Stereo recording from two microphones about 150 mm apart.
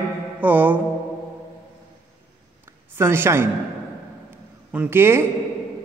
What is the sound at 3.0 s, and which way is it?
Speech, 15° right (ahead or behind).